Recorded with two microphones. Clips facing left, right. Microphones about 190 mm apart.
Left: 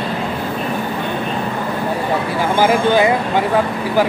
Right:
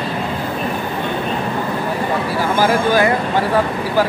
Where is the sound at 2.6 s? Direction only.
20° left (ahead or behind).